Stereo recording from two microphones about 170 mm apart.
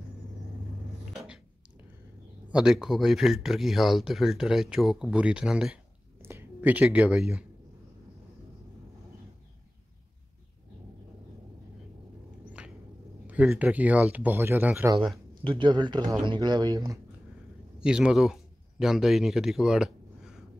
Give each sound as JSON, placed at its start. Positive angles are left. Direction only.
{"t": 1.1, "sound": "a sound", "side_deg": -5}
{"t": 2.5, "sound": "speech", "side_deg": -5}
{"t": 12.4, "sound": "a sound", "side_deg": -5}
{"t": 13.3, "sound": "speech", "side_deg": -10}
{"t": 15.4, "sound": "speech", "side_deg": -30}
{"t": 17.7, "sound": "speech", "side_deg": -5}